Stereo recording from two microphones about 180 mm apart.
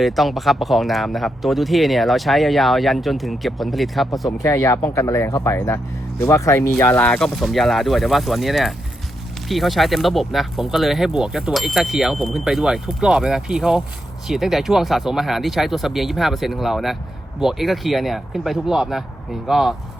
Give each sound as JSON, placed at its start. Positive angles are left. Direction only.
{"t": 0.0, "sound": "speech", "side_deg": 0}
{"t": 4.4, "sound": "speech", "side_deg": 15}